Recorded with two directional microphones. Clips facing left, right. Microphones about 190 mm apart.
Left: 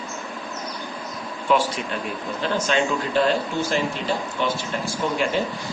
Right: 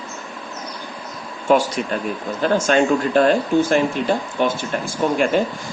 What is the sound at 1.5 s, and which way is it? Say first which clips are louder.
Speech: right 5 dB; 45° right (ahead or behind).